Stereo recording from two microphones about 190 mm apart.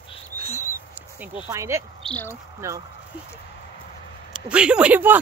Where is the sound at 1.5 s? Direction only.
15° right (ahead or behind).